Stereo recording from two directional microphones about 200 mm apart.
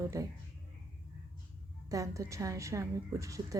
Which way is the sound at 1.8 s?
15° right (ahead or behind).